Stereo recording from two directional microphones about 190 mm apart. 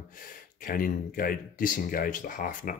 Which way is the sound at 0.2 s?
50° left (ahead or behind).